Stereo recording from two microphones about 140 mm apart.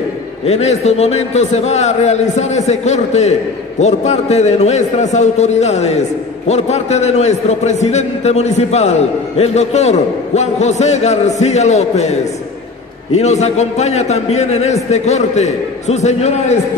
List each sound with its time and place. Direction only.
0.5 s a man's voice: 50° left (ahead or behind)